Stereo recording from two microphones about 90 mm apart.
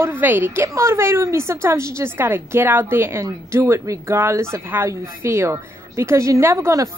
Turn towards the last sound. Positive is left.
turn(degrees=-35)  # may be behind; listen again after turning